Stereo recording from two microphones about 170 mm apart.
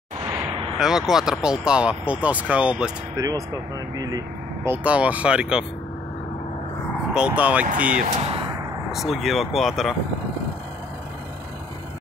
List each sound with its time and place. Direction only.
0.7 s speech: centre (ahead or behind)
3.2 s speech: 20° right (ahead or behind)
4.6 s speech: 10° right (ahead or behind)
7.2 s speech: 5° right (ahead or behind)
8.0 s speech: 40° right (ahead or behind)
8.9 s speech: centre (ahead or behind)